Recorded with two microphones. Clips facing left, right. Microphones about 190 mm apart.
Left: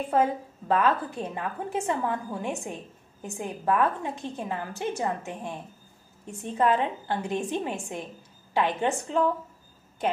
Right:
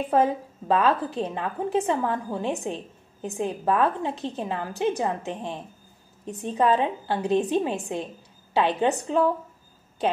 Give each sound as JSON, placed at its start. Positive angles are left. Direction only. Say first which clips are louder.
{"t": 0.7, "sound": "a woman's voice", "louder": "right 2 dB", "side_deg": -15}